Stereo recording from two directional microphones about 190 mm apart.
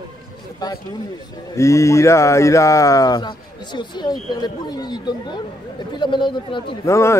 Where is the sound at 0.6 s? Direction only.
20° left (ahead or behind).